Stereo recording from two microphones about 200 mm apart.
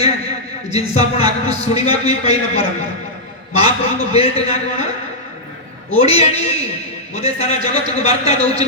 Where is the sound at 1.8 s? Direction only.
30° left (ahead or behind).